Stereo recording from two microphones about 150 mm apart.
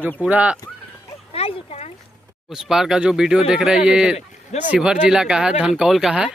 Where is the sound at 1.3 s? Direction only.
45° left (ahead or behind).